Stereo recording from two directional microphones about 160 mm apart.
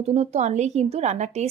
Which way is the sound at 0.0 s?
40° right (ahead or behind).